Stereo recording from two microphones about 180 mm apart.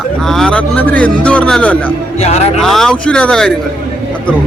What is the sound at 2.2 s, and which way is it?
Speech, 35° left (ahead or behind).